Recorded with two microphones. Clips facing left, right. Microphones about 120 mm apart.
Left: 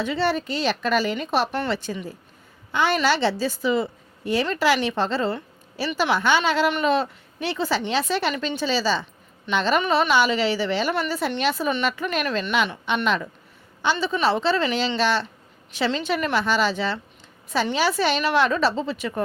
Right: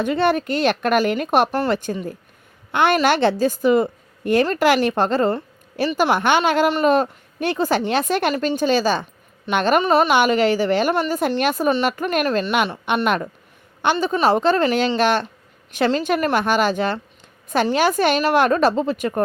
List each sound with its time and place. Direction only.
0.0 s a woman's voice: 50° right (ahead or behind)
1.5 s a woman's voice: 40° right (ahead or behind)
13.8 s a woman's voice: 45° right (ahead or behind)